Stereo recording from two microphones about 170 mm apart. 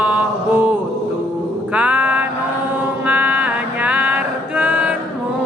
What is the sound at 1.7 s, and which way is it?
Mantra, 10° right (ahead or behind).